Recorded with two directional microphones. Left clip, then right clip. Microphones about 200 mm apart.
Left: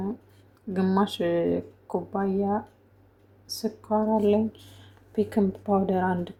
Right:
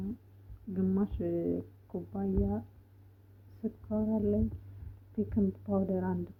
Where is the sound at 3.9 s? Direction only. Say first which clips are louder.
Left 10 dB; 25° left (ahead or behind).